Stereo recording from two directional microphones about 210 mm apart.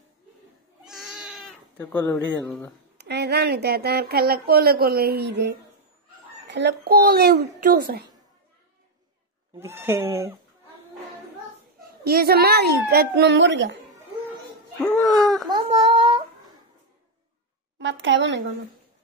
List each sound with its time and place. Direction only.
0.8 s cat: centre (ahead or behind)
1.8 s speech: 10° left (ahead or behind)
3.0 s speech: 50° right (ahead or behind)
9.6 s speech: 10° right (ahead or behind)
12.0 s speech: 45° right (ahead or behind)
14.8 s speech: 5° left (ahead or behind)
15.4 s a sound: 20° right (ahead or behind)
17.7 s a child's voice: 60° right (ahead or behind)